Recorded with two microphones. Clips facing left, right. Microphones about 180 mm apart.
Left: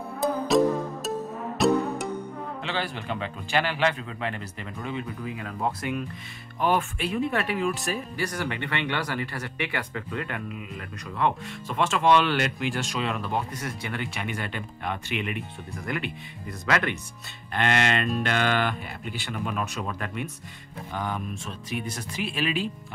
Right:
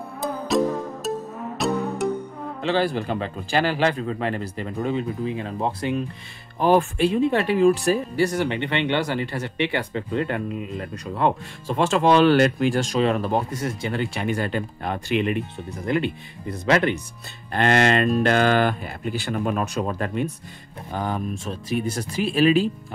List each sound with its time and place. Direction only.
0.2 s music: centre (ahead or behind)
2.6 s speech: 35° right (ahead or behind)
13.7 s speech: 30° right (ahead or behind)